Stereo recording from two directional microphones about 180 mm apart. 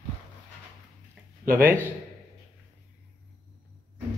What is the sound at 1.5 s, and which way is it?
Speech, 10° right (ahead or behind).